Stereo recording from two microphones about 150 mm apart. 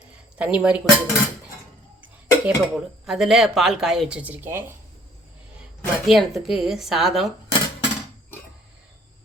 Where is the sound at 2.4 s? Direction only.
5° right (ahead or behind).